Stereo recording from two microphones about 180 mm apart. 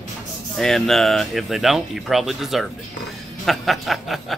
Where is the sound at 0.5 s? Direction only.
Centre (ahead or behind).